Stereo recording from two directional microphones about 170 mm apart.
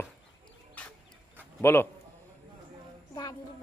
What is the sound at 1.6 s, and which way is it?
Speech, 15° left (ahead or behind).